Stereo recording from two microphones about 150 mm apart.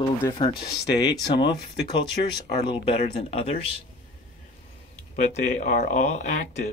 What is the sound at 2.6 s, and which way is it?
Speech, 35° left (ahead or behind).